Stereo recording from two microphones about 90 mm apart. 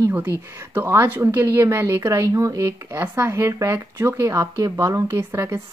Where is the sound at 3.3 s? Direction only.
35° right (ahead or behind).